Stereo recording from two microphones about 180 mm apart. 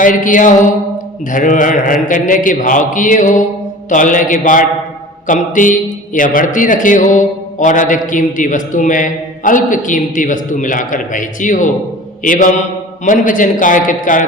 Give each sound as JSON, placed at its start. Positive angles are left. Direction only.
{"t": 0.0, "sound": "a man's voice", "side_deg": 45}